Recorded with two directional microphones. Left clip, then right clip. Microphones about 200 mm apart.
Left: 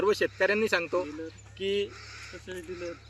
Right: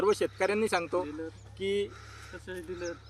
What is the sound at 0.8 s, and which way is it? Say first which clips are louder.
Speech: left 2 dB; centre (ahead or behind).